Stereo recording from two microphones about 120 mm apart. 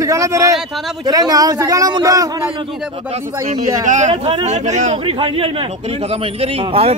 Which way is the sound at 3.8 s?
85° right.